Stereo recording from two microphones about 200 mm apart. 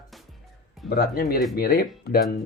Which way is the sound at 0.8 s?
50° left (ahead or behind).